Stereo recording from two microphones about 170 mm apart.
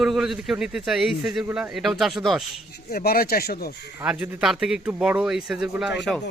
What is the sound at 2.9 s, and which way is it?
Speech, 60° left (ahead or behind).